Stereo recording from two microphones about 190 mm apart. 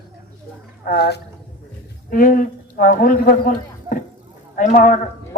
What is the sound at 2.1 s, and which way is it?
A man's voice, 45° left (ahead or behind).